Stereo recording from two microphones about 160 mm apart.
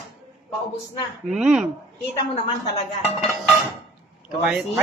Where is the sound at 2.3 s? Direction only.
40° left (ahead or behind).